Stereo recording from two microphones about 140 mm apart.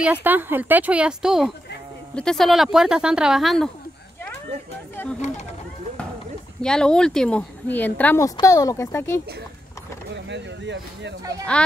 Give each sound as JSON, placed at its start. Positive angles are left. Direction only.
{"t": 0.0, "sound": "speech", "side_deg": -10}
{"t": 5.0, "sound": "speech", "side_deg": 15}
{"t": 6.6, "sound": "speech", "side_deg": 5}